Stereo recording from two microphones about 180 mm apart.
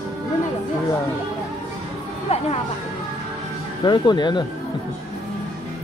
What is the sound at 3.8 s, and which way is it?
Speech, 25° left (ahead or behind).